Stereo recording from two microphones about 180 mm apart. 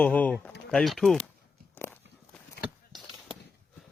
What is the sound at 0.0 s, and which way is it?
Speech, 10° left (ahead or behind).